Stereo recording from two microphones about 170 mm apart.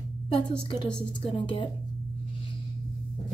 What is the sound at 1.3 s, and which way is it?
Speech, 30° left (ahead or behind).